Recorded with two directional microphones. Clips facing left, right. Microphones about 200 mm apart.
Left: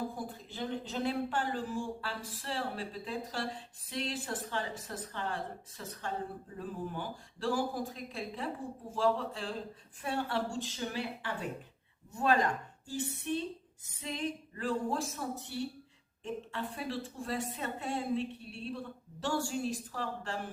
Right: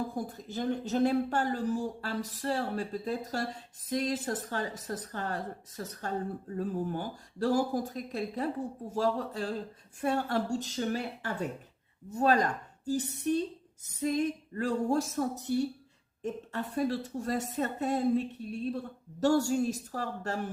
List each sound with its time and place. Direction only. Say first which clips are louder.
0.3 s a woman's voice: right 6 dB; 45° right (ahead or behind)